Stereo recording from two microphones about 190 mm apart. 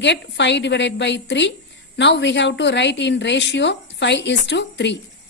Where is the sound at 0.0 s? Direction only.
70° left (ahead or behind).